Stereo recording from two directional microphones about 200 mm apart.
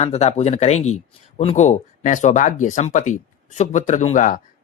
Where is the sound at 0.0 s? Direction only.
35° left (ahead or behind).